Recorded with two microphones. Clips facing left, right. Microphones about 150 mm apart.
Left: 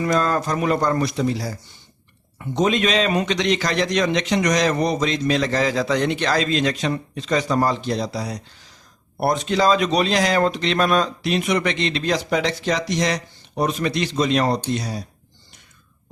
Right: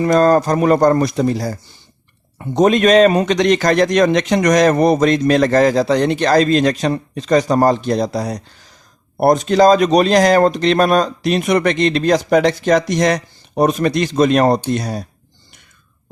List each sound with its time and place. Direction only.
0.0 s a man's voice: 40° right (ahead or behind)